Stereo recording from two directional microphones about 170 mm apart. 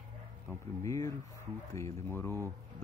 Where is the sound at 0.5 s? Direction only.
20° left (ahead or behind).